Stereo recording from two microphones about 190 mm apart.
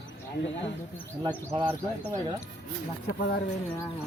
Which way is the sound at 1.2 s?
20° right (ahead or behind).